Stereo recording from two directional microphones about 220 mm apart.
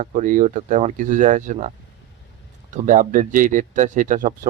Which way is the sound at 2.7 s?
35° right (ahead or behind).